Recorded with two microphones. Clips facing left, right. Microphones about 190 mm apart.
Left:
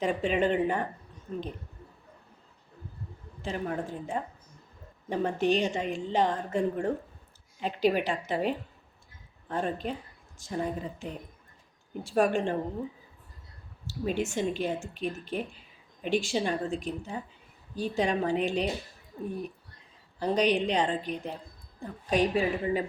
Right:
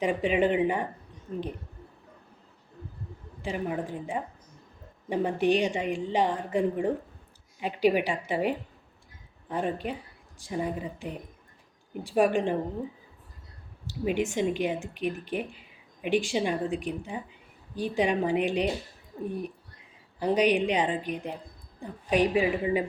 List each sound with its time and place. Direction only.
0.0 s speech: 15° right (ahead or behind)
3.4 s speech: 15° right (ahead or behind)
13.8 s speech: 15° right (ahead or behind)
20.1 s speech: 10° right (ahead or behind)